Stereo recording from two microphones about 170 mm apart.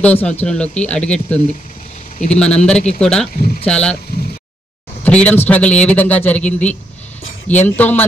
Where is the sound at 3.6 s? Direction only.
5° left (ahead or behind).